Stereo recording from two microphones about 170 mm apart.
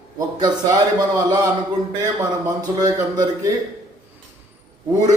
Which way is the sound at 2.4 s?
20° right (ahead or behind).